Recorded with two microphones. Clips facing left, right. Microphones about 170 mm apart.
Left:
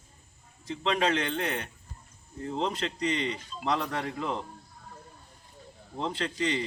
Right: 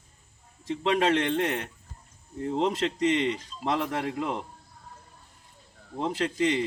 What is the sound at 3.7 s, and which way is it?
Speech, 5° right (ahead or behind).